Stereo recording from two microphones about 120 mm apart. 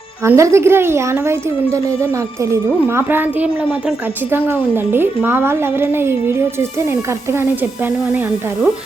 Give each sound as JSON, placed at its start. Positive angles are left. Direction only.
{"t": 0.2, "sound": "a woman's voice", "side_deg": -25}